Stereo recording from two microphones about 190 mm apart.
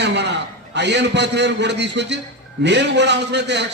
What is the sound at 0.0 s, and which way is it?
A man's voice, 65° right (ahead or behind).